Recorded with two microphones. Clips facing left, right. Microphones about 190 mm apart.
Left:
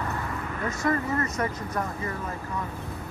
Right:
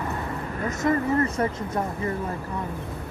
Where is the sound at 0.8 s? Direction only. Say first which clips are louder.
Right 3 dB; 20° right (ahead or behind).